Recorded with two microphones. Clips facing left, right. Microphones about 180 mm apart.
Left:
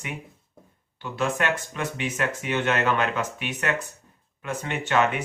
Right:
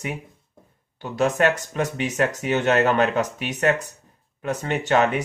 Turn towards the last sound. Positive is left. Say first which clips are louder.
# right 3 dB
turn(degrees=-40)  # may be behind; listen again after turning